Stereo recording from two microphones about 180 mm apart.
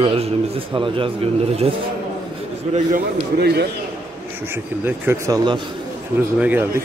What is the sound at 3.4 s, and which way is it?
Speech, 65° right (ahead or behind).